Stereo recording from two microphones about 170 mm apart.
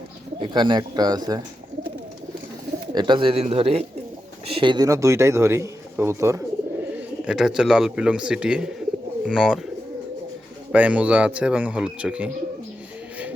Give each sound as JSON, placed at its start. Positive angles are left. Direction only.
{"t": 0.3, "sound": "speech", "side_deg": -25}
{"t": 2.9, "sound": "a man's voice", "side_deg": -25}
{"t": 6.9, "sound": "speech", "side_deg": -5}
{"t": 10.7, "sound": "a man's voice", "side_deg": -5}